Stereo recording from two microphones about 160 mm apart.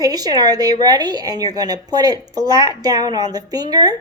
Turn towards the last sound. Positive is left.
turn(degrees=-25)  # may be behind; listen again after turning